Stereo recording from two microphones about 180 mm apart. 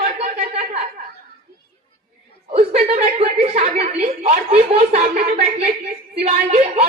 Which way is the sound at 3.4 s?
35° right (ahead or behind).